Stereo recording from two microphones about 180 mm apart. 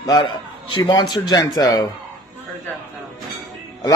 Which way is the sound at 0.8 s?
25° left (ahead or behind).